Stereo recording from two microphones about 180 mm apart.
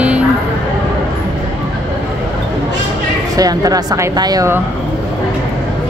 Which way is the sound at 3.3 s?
20° right (ahead or behind).